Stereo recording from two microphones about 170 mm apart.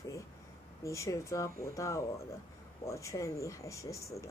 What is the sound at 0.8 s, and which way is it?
Speech, 15° left (ahead or behind).